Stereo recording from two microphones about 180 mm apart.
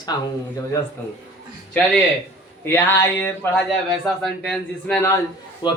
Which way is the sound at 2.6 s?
10° left (ahead or behind).